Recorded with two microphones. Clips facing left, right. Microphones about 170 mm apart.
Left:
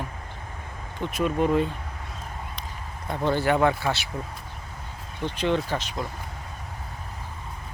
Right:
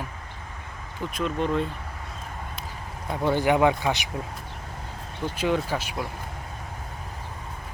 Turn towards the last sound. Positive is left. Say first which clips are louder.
# even
turn(degrees=-10)  # may be behind; listen again after turning